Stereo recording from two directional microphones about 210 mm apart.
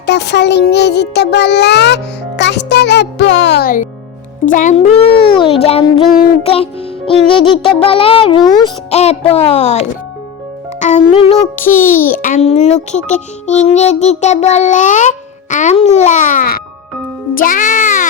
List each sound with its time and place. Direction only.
0.0 s a child's voice: 55° left (ahead or behind); by 8.7 s 20° left (ahead or behind)
8.9 s a child's voice: 30° left (ahead or behind)
11.6 s a child's voice: 40° left (ahead or behind)